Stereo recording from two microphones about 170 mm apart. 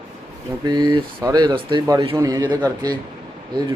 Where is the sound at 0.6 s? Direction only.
25° right (ahead or behind).